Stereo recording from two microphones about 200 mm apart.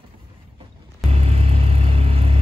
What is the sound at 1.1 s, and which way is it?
Vehicle, 30° right (ahead or behind).